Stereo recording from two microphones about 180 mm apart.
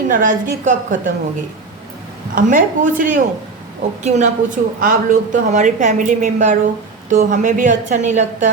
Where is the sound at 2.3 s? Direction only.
50° right (ahead or behind).